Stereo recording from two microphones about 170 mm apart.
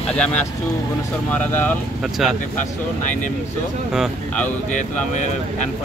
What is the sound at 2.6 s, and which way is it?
Speech, 50° left (ahead or behind).